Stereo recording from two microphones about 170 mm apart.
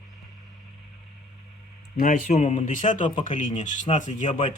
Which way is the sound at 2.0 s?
50° left (ahead or behind).